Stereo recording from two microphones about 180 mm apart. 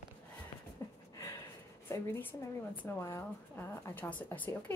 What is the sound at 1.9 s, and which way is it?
A woman's voice, 15° left (ahead or behind).